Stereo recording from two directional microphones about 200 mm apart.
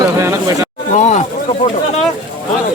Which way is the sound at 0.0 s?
15° right (ahead or behind).